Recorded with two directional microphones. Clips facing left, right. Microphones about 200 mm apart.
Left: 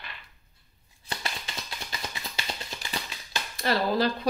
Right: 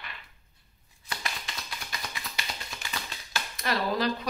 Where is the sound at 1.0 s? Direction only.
30° left (ahead or behind).